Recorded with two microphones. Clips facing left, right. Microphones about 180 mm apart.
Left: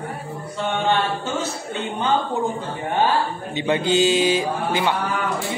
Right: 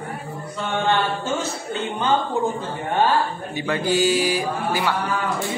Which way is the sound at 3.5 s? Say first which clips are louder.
Left 2 dB; 20° left (ahead or behind).